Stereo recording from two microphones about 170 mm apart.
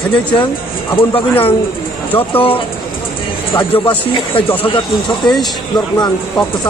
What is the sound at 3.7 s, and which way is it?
Speech, 30° left (ahead or behind).